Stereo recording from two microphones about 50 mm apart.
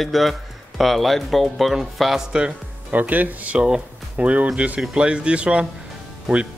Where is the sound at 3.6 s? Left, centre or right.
Right.